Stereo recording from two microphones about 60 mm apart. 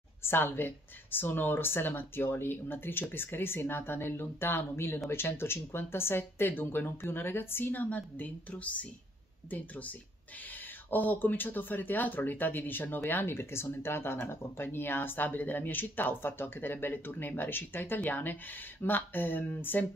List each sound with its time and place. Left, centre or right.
0.2 s speech: left